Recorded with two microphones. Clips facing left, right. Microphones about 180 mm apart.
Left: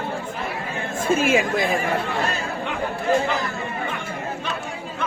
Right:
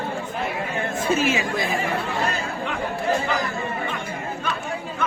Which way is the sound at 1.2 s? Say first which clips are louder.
Left 6 dB; 50° left (ahead or behind).